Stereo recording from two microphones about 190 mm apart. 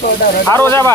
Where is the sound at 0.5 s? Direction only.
15° left (ahead or behind).